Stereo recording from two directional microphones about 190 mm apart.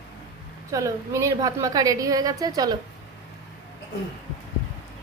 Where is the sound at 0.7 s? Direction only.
15° right (ahead or behind).